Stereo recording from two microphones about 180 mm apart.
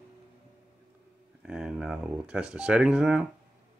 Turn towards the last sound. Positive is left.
turn(degrees=-5)  # may be behind; listen again after turning